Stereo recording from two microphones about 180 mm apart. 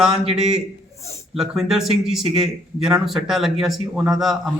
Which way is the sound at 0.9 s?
35° left (ahead or behind).